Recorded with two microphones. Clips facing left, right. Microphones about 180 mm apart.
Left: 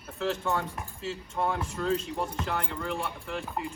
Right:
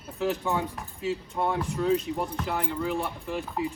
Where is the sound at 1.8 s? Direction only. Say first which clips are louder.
Right 4 dB; 15° right (ahead or behind).